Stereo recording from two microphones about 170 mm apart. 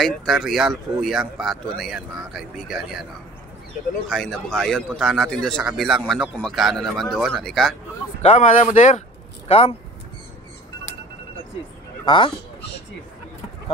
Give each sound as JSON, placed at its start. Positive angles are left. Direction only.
{"t": 0.0, "sound": "a man's voice", "side_deg": 0}
{"t": 4.1, "sound": "a man's voice", "side_deg": 5}
{"t": 8.2, "sound": "speech", "side_deg": 45}